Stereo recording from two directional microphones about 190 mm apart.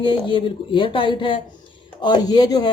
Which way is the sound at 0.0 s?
25° left (ahead or behind).